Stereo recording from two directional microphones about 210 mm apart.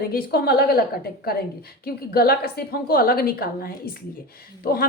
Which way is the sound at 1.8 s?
45° left (ahead or behind).